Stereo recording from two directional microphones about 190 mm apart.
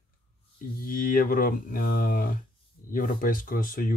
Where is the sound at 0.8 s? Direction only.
45° left (ahead or behind).